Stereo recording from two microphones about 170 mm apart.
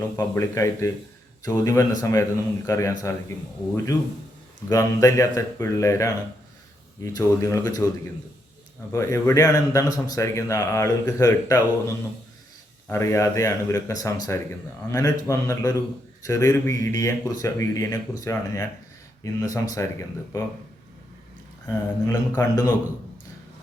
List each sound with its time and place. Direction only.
0.2 s a man's voice: 20° left (ahead or behind)
4.7 s a man's voice: 20° left (ahead or behind)
8.9 s a man's voice: 15° left (ahead or behind)
12.9 s a man's voice: 15° left (ahead or behind)
21.7 s a man's voice: 15° left (ahead or behind)